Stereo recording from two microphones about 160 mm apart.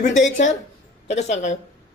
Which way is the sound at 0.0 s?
50° left (ahead or behind).